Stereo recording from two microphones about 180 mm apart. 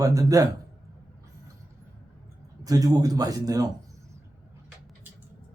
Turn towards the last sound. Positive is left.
turn(degrees=-20)  # may be behind; listen again after turning